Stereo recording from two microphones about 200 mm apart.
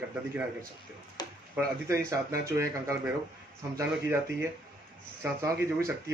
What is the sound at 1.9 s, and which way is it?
Speech, 15° right (ahead or behind).